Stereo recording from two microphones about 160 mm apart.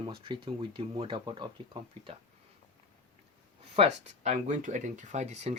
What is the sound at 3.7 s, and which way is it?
Speech, 40° right (ahead or behind).